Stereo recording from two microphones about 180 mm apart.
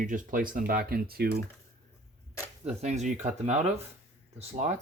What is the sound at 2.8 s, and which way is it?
Speech, 40° right (ahead or behind).